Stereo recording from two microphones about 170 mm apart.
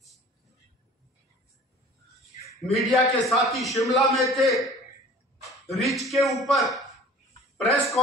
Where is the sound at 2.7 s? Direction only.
Centre (ahead or behind).